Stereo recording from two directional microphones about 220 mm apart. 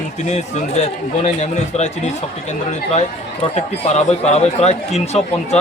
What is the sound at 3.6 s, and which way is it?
Speech, 30° left (ahead or behind).